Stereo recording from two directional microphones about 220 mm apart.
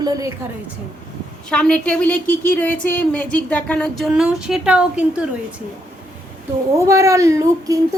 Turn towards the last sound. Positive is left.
turn(degrees=-15)  # may be behind; listen again after turning